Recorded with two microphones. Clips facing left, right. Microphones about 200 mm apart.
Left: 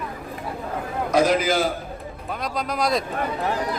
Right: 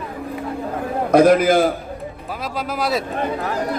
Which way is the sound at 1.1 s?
55° right (ahead or behind).